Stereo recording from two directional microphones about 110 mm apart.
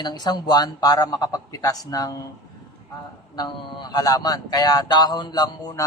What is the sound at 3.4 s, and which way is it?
A woman's voice, 40° left (ahead or behind).